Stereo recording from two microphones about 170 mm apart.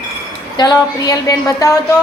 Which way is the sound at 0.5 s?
25° left (ahead or behind).